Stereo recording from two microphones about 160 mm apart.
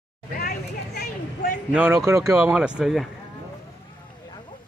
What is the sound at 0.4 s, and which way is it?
Speech, 80° left.